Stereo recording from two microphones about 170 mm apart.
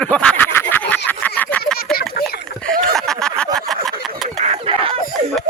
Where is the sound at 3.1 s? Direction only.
5° left (ahead or behind).